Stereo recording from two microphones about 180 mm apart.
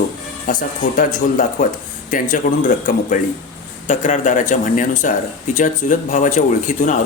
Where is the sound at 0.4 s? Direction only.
50° left (ahead or behind).